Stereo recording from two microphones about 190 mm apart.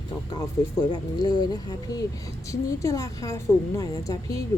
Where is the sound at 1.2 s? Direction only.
25° left (ahead or behind).